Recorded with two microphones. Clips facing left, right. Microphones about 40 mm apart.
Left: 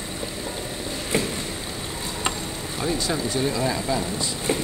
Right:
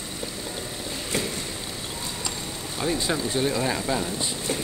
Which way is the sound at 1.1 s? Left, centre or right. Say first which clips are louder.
Left 4 dB; left.